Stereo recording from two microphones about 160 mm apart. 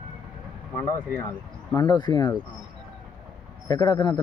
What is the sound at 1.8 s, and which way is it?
Speech, 25° left (ahead or behind).